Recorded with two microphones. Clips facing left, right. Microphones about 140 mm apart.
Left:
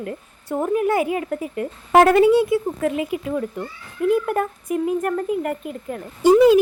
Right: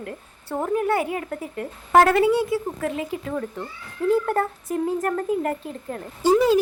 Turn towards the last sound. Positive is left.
turn(degrees=15)  # may be behind; listen again after turning